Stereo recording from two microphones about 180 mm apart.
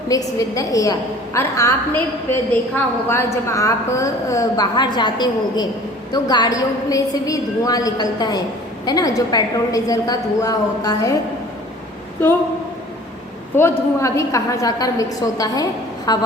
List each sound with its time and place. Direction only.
0.1 s a woman's voice: 20° left (ahead or behind)
13.6 s a woman's voice: 15° left (ahead or behind)